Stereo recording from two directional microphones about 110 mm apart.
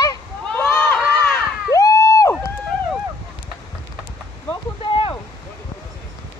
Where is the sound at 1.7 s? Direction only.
30° left (ahead or behind).